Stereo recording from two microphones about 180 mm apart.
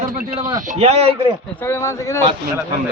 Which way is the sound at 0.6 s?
40° right (ahead or behind).